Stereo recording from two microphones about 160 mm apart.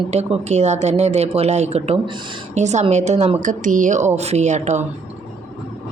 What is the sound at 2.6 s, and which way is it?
Speech, 45° right (ahead or behind).